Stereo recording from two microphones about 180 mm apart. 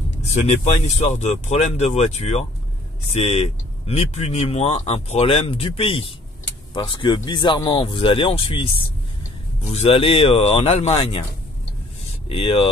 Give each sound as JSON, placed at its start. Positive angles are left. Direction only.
{"t": 0.3, "sound": "speech", "side_deg": 35}
{"t": 9.7, "sound": "speech", "side_deg": 35}
{"t": 12.3, "sound": "speech", "side_deg": 30}